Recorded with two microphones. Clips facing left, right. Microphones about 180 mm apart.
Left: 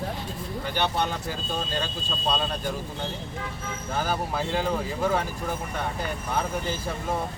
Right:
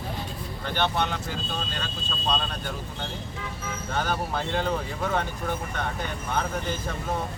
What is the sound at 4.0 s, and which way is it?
Speech, 5° left (ahead or behind).